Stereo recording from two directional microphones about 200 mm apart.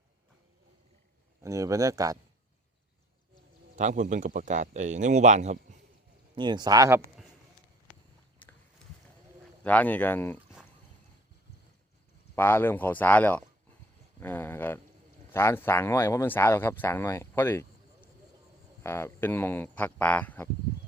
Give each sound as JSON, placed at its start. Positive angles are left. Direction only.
{"t": 1.4, "sound": "speech", "side_deg": -15}
{"t": 3.8, "sound": "speech", "side_deg": -40}
{"t": 6.3, "sound": "speech", "side_deg": -20}
{"t": 8.4, "sound": "a sound", "side_deg": 10}
{"t": 9.6, "sound": "speech", "side_deg": 10}
{"t": 12.4, "sound": "speech", "side_deg": 10}